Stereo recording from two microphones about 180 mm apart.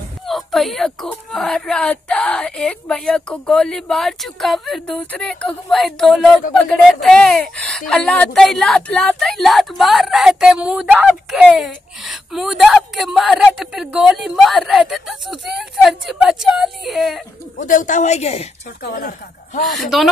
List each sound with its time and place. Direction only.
0.3 s speech: centre (ahead or behind)
17.6 s speech: 45° left (ahead or behind)
18.8 s speech: 65° left (ahead or behind)
19.6 s speech: centre (ahead or behind)